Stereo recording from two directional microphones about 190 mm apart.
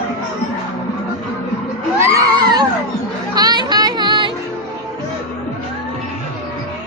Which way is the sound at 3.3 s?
20° right (ahead or behind).